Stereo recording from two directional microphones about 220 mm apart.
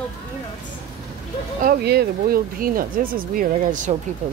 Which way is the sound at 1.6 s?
45° right (ahead or behind).